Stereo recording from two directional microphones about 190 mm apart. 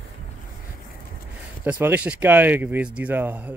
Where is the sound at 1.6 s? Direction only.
10° right (ahead or behind).